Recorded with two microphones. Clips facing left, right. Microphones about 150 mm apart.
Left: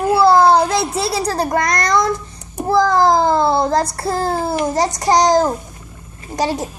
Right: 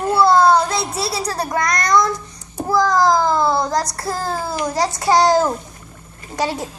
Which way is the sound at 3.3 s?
25° left (ahead or behind).